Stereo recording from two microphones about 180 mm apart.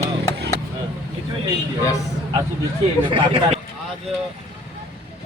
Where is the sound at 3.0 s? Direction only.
30° right (ahead or behind).